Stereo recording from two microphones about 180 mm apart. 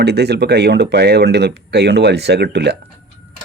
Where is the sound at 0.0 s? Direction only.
65° right (ahead or behind).